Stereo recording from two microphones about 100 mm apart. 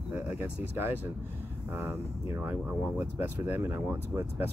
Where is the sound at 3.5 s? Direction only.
20° right (ahead or behind).